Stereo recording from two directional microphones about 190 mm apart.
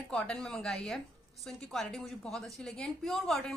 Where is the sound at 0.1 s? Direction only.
5° left (ahead or behind).